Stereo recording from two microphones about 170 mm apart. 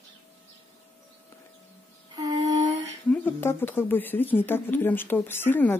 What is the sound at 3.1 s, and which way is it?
Speech, 10° left (ahead or behind).